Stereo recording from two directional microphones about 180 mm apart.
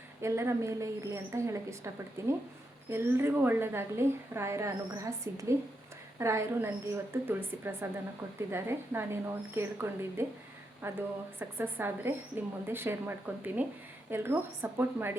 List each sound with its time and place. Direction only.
0.2 s a woman's voice: 15° right (ahead or behind)